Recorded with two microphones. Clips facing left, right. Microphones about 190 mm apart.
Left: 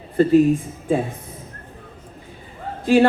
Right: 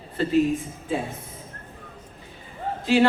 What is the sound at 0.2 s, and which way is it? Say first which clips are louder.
Speech: left 9 dB; 45° left (ahead or behind).